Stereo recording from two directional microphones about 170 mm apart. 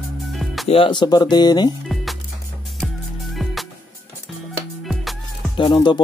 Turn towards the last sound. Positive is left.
turn(degrees=25)  # may be behind; listen again after turning